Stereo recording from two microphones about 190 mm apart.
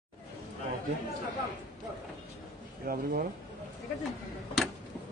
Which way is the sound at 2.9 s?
50° right (ahead or behind).